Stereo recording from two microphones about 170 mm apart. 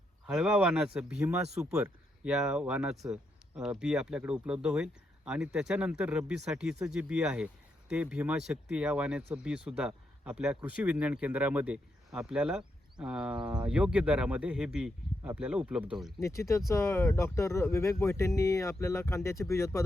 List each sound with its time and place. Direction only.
0.3 s speech: 5° right (ahead or behind)
16.2 s speech: 15° left (ahead or behind)